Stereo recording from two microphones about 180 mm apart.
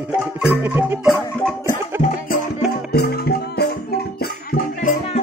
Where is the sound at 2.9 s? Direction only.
60° left (ahead or behind).